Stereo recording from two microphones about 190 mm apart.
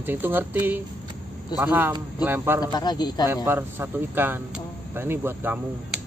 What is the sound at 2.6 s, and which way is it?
Speech, 20° left (ahead or behind).